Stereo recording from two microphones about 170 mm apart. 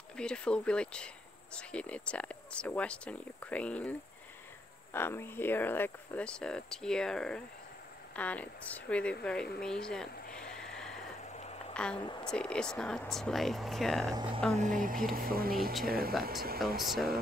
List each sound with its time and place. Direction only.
0.1 s speech: 5° left (ahead or behind)
4.9 s speech: 15° left (ahead or behind)
10.3 s sniff: 5° left (ahead or behind)
11.3 s a sound: 40° left (ahead or behind)
11.7 s a woman's voice: 5° left (ahead or behind)
12.0 s speech: 25° left (ahead or behind)
12.3 s speech: 5° left (ahead or behind)
14.1 s speech: 30° right (ahead or behind)
14.5 s speech: 45° right (ahead or behind); by 16.2 s 65° right (ahead or behind)
16.5 s speech: centre (ahead or behind)